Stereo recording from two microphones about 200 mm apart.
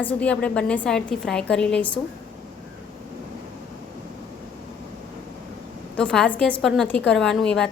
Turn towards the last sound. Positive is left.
turn(degrees=5)  # may be behind; listen again after turning